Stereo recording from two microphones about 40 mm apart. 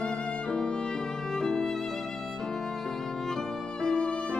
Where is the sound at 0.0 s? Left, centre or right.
Left.